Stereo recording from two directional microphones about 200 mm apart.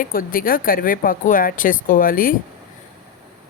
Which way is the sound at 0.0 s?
45° left (ahead or behind).